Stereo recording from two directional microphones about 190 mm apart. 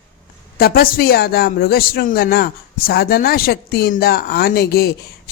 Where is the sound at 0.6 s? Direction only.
55° left (ahead or behind).